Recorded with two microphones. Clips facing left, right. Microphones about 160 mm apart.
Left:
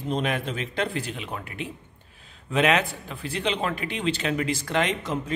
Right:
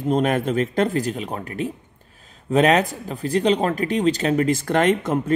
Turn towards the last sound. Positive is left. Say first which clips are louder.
# right 9 dB
turn(degrees=-50)  # may be behind; listen again after turning